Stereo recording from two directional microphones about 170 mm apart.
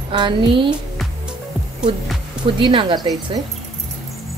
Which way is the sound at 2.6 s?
30° right (ahead or behind).